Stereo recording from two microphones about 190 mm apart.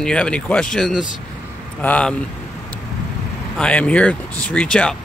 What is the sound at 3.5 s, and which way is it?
Speech, 5° left (ahead or behind).